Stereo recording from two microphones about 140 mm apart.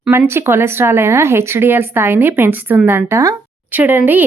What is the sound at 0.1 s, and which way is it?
Speech, 15° right (ahead or behind).